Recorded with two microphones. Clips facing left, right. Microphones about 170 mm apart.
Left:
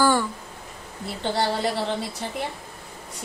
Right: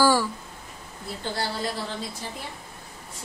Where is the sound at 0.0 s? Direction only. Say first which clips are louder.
Even; 5° right (ahead or behind).